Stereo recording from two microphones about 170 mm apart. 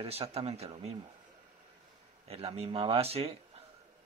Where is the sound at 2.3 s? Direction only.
35° right (ahead or behind).